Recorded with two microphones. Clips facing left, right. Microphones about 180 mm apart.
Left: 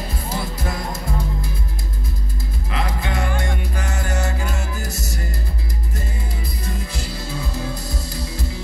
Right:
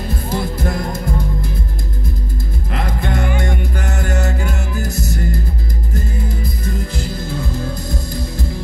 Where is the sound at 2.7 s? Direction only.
55° right (ahead or behind).